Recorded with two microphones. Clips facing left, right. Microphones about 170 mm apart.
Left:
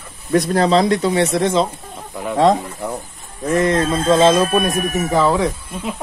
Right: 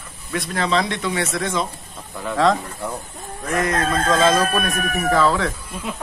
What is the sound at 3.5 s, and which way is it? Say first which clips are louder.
Chicken: left 5 dB; 30° left (ahead or behind).